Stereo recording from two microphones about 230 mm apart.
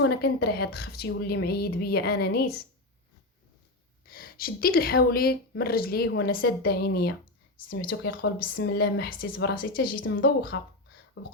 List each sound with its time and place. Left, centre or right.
0.0 s speech: left
4.0 s speech: left